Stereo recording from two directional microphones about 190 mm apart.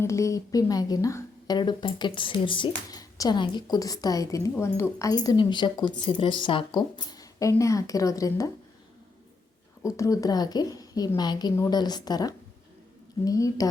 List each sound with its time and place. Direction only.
0.0 s speech: 15° left (ahead or behind)
9.8 s a woman's voice: 15° left (ahead or behind)